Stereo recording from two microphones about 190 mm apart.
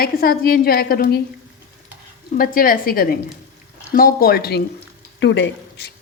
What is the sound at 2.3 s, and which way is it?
A woman's voice, 50° left (ahead or behind).